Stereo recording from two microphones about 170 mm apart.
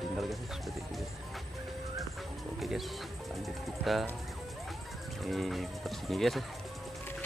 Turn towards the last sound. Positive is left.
turn(degrees=0)  # may be behind; listen again after turning